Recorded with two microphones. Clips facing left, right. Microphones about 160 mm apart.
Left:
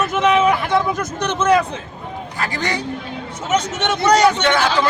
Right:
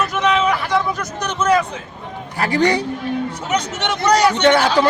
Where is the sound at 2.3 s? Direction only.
30° right (ahead or behind).